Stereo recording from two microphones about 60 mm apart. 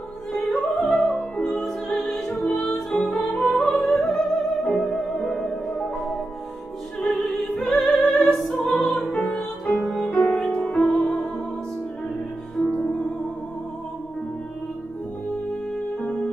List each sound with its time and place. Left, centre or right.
0.3 s opera: centre
0.9 s music: centre
7.1 s opera: centre
8.6 s music: centre
9.3 s music: centre
9.8 s music: centre
10.1 s music: left
15.7 s music: centre